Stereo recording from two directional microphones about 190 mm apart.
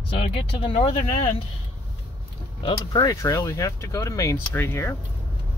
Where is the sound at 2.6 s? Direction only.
25° left (ahead or behind).